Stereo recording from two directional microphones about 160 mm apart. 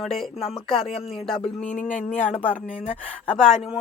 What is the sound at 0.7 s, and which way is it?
Speech, 35° left (ahead or behind).